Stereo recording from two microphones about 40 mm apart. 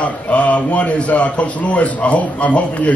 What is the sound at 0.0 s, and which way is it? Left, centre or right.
A man's voice, left.